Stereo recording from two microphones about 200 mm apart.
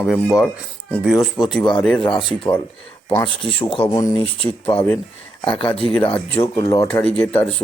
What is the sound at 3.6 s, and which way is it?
Speech, 25° left (ahead or behind).